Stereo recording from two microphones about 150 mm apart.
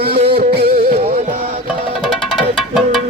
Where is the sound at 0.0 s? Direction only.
90° right.